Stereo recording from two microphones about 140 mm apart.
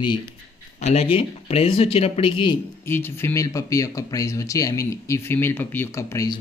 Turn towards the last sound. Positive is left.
turn(degrees=20)  # may be behind; listen again after turning